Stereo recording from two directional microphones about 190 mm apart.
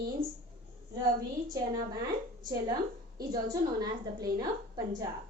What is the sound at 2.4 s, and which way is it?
A woman's voice, 25° right (ahead or behind).